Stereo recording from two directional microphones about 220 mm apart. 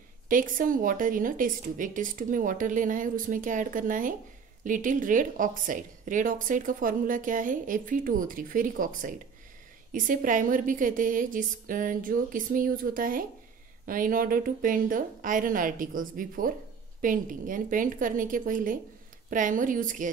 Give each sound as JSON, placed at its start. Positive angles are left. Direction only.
{"t": 0.3, "sound": "a woman's voice", "side_deg": -40}